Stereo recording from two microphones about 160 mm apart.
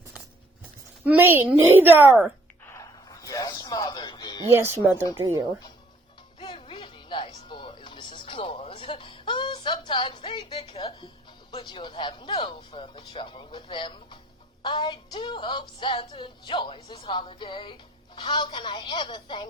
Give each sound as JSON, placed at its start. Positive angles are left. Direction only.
{"t": 1.0, "sound": "speech", "side_deg": -10}
{"t": 2.6, "sound": "music", "side_deg": 20}
{"t": 4.5, "sound": "speech", "side_deg": -15}
{"t": 6.4, "sound": "music", "side_deg": 30}